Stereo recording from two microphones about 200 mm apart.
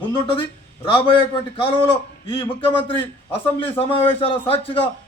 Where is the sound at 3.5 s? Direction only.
25° left (ahead or behind).